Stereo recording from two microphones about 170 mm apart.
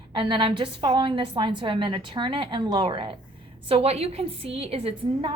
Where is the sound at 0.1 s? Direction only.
30° right (ahead or behind).